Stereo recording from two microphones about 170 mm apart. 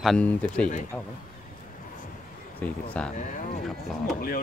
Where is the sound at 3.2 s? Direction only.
45° left (ahead or behind).